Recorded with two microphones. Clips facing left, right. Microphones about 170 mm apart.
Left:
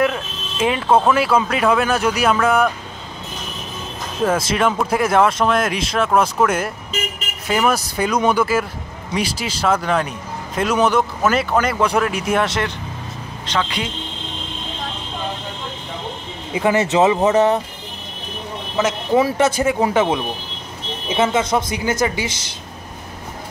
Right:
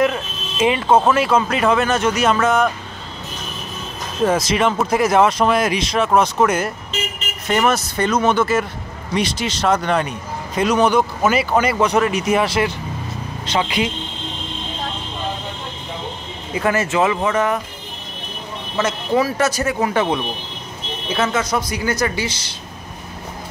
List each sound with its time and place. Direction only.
0.0 s speech: centre (ahead or behind)
4.2 s a man's voice: centre (ahead or behind)
16.5 s speech: 20° left (ahead or behind)
18.8 s speech: 20° left (ahead or behind)
21.1 s speech: 25° left (ahead or behind)